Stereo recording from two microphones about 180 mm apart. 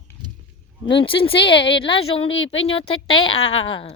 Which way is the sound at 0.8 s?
30° left (ahead or behind).